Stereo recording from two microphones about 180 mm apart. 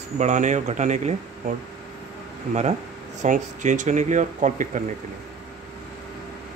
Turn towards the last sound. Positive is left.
turn(degrees=-45)  # may be behind; listen again after turning